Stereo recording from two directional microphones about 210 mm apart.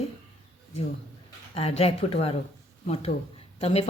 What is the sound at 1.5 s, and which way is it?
Speech, 30° left (ahead or behind).